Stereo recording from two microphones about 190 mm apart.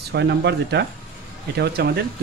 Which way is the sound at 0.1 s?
65° right (ahead or behind).